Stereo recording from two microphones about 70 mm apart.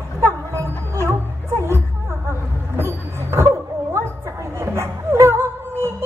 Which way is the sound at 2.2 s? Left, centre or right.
Right.